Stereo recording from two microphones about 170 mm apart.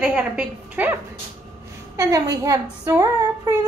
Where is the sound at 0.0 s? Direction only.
5° right (ahead or behind).